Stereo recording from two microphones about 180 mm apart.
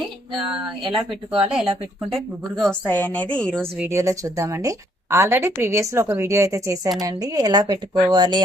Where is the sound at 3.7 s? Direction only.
10° right (ahead or behind).